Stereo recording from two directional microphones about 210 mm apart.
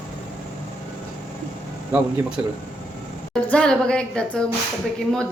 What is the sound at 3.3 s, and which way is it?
A woman's voice, 5° left (ahead or behind).